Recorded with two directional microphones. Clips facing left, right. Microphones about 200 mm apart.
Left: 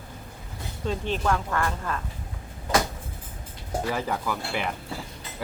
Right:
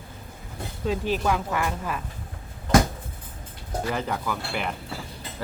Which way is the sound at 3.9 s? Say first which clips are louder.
Right 1 dB; 5° left (ahead or behind).